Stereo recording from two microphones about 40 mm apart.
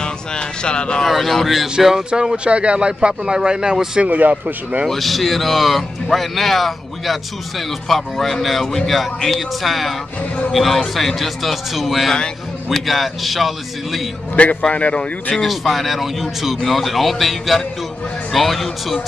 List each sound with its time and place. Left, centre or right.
0.0 s a sound: left
1.0 s speech: centre
1.5 s speech: centre
2.0 s speech: right
4.0 s speech: right
4.8 s speech: centre
14.3 s speech: left
15.4 s speech: centre